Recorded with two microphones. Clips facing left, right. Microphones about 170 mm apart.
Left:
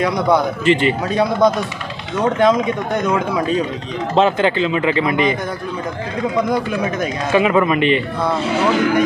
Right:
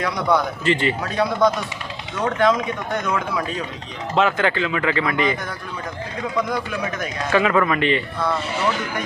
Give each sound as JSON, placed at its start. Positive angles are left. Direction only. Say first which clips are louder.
{"t": 0.0, "sound": "a man's voice", "louder": "left 5 dB", "side_deg": 20}
{"t": 6.5, "sound": "a man's voice", "louder": "left 6 dB", "side_deg": 25}
{"t": 8.5, "sound": "speech", "louder": "left 8 dB", "side_deg": 90}